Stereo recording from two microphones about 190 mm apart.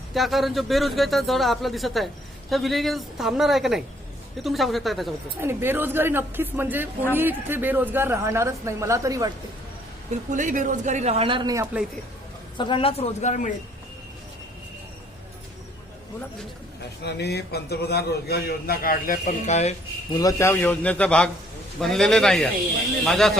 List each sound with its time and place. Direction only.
0.1 s a man's voice: centre (ahead or behind)
5.4 s a woman's voice: 10° right (ahead or behind)
10.1 s speech: 40° right (ahead or behind); by 11.9 s 10° right (ahead or behind)
12.5 s speech: 25° left (ahead or behind)
17.0 s a man's voice: 60° left (ahead or behind); by 19.7 s 35° left (ahead or behind)
20.1 s a man's voice: 15° left (ahead or behind)